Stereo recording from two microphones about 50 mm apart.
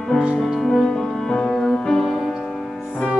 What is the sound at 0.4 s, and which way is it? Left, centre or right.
Music, centre.